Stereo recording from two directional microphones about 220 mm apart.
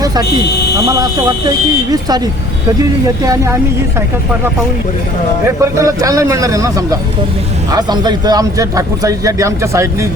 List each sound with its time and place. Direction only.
1.5 s a man's voice: 15° right (ahead or behind)
5.6 s a man's voice: 15° right (ahead or behind)